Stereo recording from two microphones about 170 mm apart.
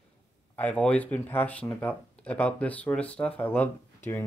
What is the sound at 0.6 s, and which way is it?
Speech, 5° left (ahead or behind).